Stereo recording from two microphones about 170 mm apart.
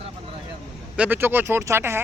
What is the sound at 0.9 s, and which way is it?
Speech, 10° right (ahead or behind).